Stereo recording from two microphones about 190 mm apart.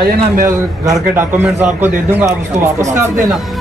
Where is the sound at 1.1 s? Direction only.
10° right (ahead or behind).